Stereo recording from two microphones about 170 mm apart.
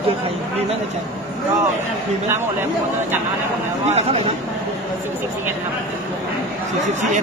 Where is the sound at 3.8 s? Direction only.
40° right (ahead or behind).